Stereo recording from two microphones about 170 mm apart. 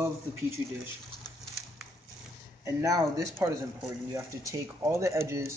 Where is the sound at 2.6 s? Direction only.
20° right (ahead or behind).